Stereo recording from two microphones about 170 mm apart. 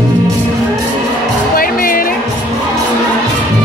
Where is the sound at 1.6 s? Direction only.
55° left (ahead or behind).